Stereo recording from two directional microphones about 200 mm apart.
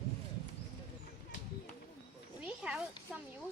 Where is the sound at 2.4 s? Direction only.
5° right (ahead or behind).